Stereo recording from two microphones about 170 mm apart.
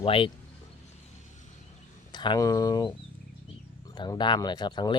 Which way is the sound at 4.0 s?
25° left (ahead or behind).